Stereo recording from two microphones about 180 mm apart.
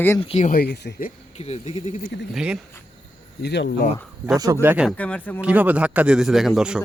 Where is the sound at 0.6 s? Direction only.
65° left (ahead or behind).